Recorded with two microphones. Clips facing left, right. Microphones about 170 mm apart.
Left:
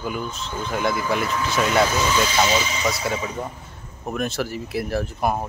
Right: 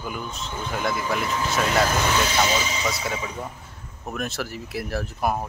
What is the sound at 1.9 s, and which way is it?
Speech, 60° right (ahead or behind).